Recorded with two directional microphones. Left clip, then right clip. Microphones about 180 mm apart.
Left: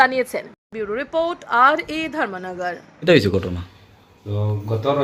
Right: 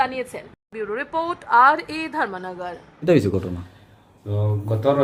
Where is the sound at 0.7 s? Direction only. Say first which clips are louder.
Left 3 dB; 10° left (ahead or behind).